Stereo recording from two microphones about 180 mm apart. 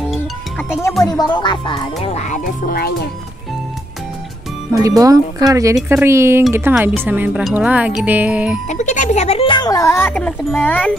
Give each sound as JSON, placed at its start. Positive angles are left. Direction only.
{"t": 1.0, "sound": "speech", "side_deg": 25}
{"t": 2.0, "sound": "speech", "side_deg": 40}
{"t": 4.8, "sound": "speech", "side_deg": -20}
{"t": 8.6, "sound": "speech", "side_deg": 40}